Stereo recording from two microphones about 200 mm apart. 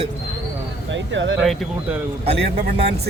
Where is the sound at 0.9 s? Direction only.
65° right (ahead or behind).